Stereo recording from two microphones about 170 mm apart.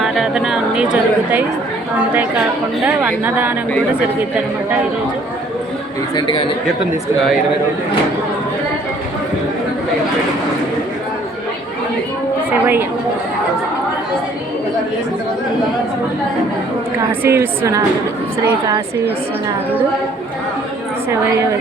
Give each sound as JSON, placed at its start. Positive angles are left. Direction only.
{"t": 0.0, "sound": "a woman's voice", "side_deg": 0}
{"t": 2.8, "sound": "a woman's voice", "side_deg": -10}
{"t": 12.5, "sound": "a woman's voice", "side_deg": -15}
{"t": 17.0, "sound": "a woman's voice", "side_deg": -15}